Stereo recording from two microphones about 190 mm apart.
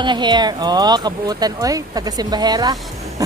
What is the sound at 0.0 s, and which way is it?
Speech, 25° right (ahead or behind).